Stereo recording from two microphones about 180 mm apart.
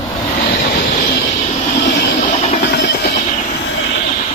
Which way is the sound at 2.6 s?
65° left (ahead or behind).